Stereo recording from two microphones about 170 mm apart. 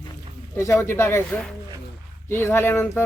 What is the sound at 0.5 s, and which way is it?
Speech, 15° left (ahead or behind).